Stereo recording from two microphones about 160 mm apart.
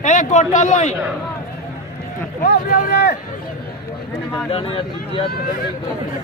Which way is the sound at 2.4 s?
75° left (ahead or behind).